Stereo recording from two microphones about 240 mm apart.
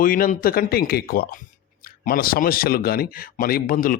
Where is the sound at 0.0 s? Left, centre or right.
Left.